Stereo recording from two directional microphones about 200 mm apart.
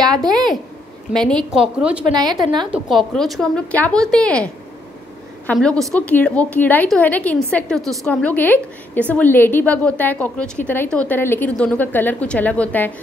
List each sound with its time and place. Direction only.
0.1 s a sound: 20° right (ahead or behind)
1.1 s a woman's voice: 5° left (ahead or behind)
2.1 s a woman's voice: 20° right (ahead or behind)
2.7 s a woman's voice: centre (ahead or behind)
5.5 s a woman's voice: 5° left (ahead or behind)